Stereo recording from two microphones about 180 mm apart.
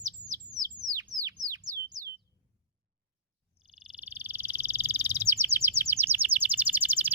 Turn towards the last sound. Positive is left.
turn(degrees=-10)  # may be behind; listen again after turning